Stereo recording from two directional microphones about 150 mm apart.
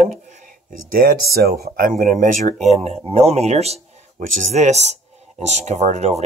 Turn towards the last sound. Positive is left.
turn(degrees=-50)  # may be behind; listen again after turning